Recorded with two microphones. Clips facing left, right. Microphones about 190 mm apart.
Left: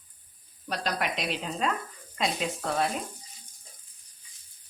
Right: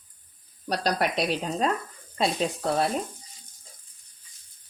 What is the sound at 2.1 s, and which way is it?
Frying, 35° right (ahead or behind).